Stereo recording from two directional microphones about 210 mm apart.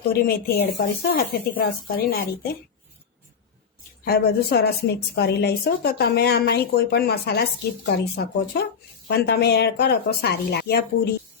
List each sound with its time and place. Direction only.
0.1 s a woman's voice: 45° left (ahead or behind)
4.0 s a woman's voice: 50° left (ahead or behind)